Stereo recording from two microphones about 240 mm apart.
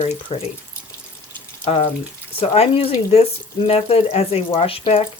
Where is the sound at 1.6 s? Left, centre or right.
Left.